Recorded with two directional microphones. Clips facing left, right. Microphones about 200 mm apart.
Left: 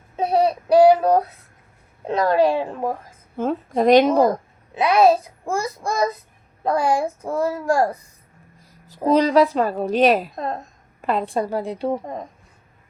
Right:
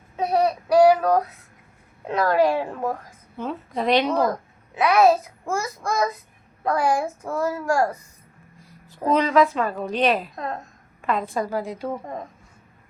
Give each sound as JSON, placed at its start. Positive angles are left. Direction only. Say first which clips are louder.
{"t": 0.2, "sound": "child singing", "louder": "left 2 dB", "side_deg": 30}
{"t": 2.0, "sound": "a child's voice", "louder": "left 2 dB", "side_deg": 25}
{"t": 3.3, "sound": "a woman's voice", "louder": "left 7 dB", "side_deg": 45}
{"t": 4.7, "sound": "a child's voice", "louder": "left 2 dB", "side_deg": 25}
{"t": 9.0, "sound": "a woman's voice", "louder": "left 3 dB", "side_deg": 35}